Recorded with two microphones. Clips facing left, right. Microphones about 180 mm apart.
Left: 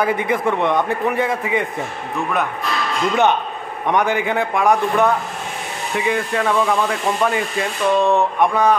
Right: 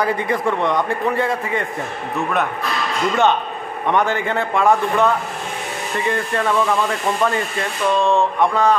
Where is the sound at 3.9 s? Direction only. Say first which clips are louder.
Left 1 dB; 15° left (ahead or behind).